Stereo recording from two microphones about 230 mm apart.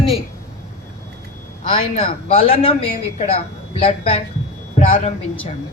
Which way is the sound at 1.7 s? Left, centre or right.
Left.